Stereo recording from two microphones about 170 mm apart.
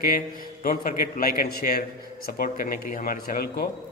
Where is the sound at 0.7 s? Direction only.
60° left (ahead or behind).